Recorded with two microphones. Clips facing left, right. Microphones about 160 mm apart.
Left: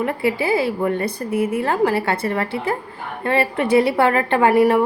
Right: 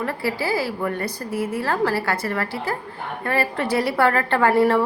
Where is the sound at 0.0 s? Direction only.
20° left (ahead or behind).